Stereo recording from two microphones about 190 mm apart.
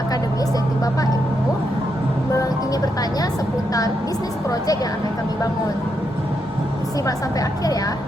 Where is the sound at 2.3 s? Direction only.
20° left (ahead or behind).